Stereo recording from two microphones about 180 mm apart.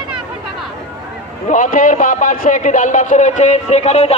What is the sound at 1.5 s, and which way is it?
A man's voice, 45° left (ahead or behind).